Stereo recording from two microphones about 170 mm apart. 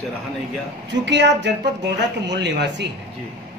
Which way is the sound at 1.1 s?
90° right.